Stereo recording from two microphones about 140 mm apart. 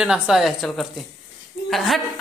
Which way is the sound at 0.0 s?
5° right (ahead or behind).